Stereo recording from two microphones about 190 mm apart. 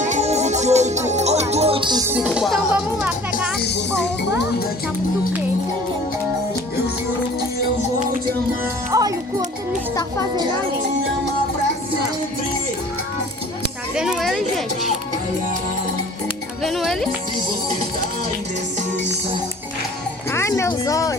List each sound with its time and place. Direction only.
0.0 s music: 40° right (ahead or behind)
2.0 s music: 5° right (ahead or behind)
8.9 s speech: 20° right (ahead or behind)
13.6 s a sound: 5° right (ahead or behind)
16.6 s music: centre (ahead or behind)
20.3 s a sound: 15° left (ahead or behind)